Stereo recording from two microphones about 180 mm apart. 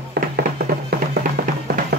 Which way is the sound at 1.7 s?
60° right (ahead or behind).